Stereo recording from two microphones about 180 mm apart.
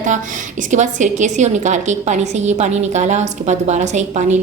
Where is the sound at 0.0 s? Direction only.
45° right (ahead or behind).